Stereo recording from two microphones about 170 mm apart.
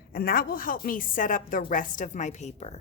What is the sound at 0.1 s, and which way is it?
A woman's voice, 60° left (ahead or behind).